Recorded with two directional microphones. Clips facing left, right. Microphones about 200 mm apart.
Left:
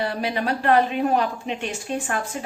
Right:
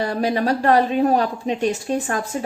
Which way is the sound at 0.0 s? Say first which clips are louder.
Right 4 dB; 40° right (ahead or behind).